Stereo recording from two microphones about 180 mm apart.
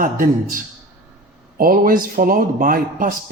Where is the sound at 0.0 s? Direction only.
50° right (ahead or behind).